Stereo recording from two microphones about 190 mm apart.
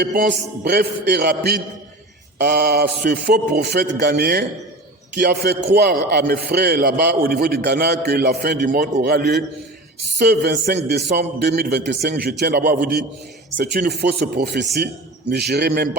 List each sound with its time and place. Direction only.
0.0 s music: 50° right (ahead or behind)
0.6 s a man's voice: 60° right (ahead or behind)
12.7 s music: 45° right (ahead or behind)
13.6 s a man's voice: 60° right (ahead or behind)